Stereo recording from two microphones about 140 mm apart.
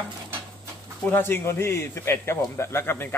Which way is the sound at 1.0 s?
15° left (ahead or behind).